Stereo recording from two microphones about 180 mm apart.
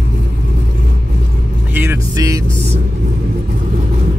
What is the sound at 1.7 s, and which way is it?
Vehicle, 15° right (ahead or behind).